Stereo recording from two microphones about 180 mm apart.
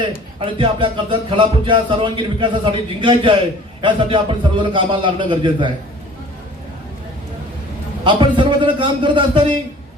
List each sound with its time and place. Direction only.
0.0 s a man's voice: 30° right (ahead or behind)
8.0 s a man's voice: 25° right (ahead or behind)